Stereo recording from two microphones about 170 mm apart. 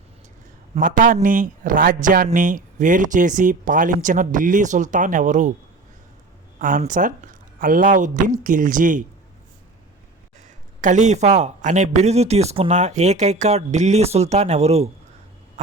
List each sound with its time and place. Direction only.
0.8 s speech: 50° right (ahead or behind)
6.6 s speech: 50° right (ahead or behind)
10.8 s speech: 45° right (ahead or behind)